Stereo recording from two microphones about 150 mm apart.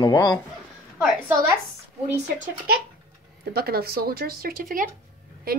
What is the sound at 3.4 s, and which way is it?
Speech, 90° right.